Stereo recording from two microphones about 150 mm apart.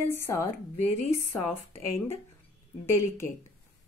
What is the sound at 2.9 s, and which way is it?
Speech, 15° left (ahead or behind).